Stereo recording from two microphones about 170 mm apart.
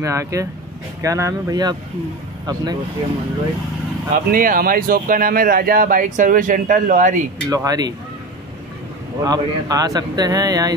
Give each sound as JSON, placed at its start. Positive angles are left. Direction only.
{"t": 0.0, "sound": "a man's voice", "side_deg": -20}
{"t": 4.1, "sound": "speech", "side_deg": -55}
{"t": 7.4, "sound": "a man's voice", "side_deg": -20}
{"t": 9.2, "sound": "a man's voice", "side_deg": -20}